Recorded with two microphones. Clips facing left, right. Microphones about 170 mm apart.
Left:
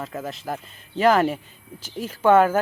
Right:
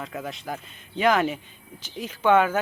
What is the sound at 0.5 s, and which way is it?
Speech, 35° left (ahead or behind).